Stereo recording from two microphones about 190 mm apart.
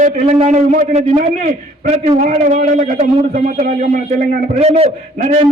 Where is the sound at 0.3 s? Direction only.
40° right (ahead or behind).